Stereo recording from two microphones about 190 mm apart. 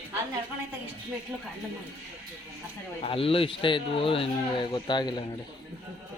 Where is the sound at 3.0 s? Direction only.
30° left (ahead or behind).